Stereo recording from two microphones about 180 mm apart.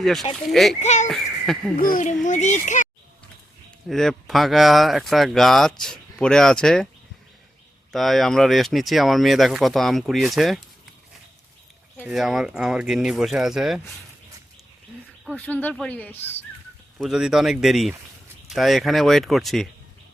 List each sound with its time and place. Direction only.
0.0 s speech: centre (ahead or behind)
0.8 s a child's voice: 40° left (ahead or behind)
3.8 s speech: centre (ahead or behind)
7.9 s speech: centre (ahead or behind)
11.9 s speech: 5° right (ahead or behind)
15.2 s a sound: centre (ahead or behind)
15.4 s speech: 10° left (ahead or behind)
17.0 s speech: 5° right (ahead or behind)